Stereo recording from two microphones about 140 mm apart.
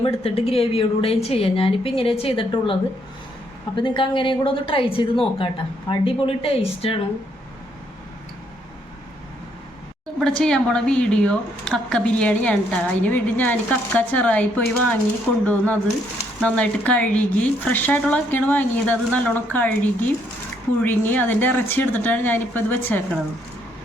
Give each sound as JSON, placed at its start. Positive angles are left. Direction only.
{"t": 0.0, "sound": "a woman's voice", "side_deg": 45}
{"t": 3.8, "sound": "speech", "side_deg": 35}
{"t": 10.2, "sound": "a woman's voice", "side_deg": 5}